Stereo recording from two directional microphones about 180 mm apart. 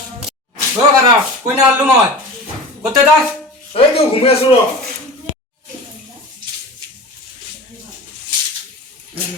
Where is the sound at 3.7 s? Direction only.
35° left (ahead or behind).